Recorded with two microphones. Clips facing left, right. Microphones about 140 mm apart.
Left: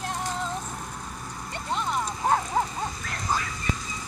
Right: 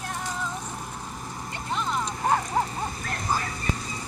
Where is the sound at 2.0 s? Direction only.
Centre (ahead or behind).